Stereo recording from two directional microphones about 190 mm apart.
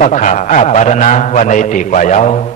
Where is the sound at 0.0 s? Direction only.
40° left (ahead or behind).